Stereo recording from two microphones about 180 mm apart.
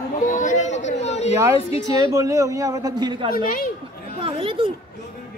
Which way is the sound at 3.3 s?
55° left (ahead or behind).